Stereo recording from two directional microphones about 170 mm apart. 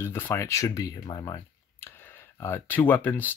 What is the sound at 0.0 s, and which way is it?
Speech, 15° left (ahead or behind).